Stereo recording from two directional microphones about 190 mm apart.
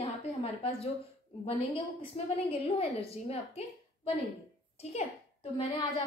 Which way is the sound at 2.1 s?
30° left (ahead or behind).